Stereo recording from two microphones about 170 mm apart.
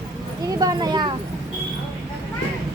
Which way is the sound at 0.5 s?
25° right (ahead or behind).